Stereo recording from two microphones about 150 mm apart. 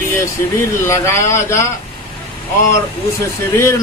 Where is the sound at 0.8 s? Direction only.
20° left (ahead or behind).